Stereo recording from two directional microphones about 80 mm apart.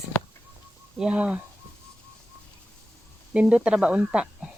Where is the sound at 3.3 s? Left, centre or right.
Centre.